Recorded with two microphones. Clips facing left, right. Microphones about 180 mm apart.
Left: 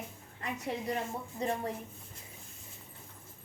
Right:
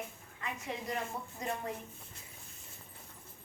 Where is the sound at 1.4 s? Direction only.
30° left (ahead or behind).